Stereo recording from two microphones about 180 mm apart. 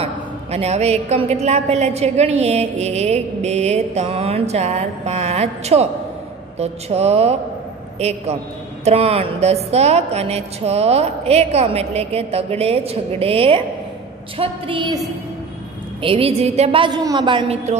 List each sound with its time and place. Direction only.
0.0 s a woman's voice: 35° right (ahead or behind)
16.0 s a woman's voice: 30° right (ahead or behind)